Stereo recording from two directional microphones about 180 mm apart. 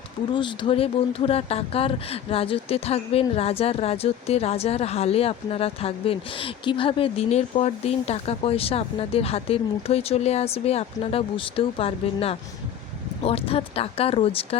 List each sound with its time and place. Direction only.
0.3 s speech: 25° left (ahead or behind)